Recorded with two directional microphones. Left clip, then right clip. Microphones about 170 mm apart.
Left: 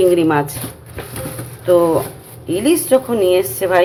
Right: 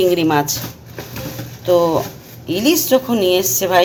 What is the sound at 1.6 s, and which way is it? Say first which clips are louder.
A woman's voice: left 1 dB; 10° right (ahead or behind).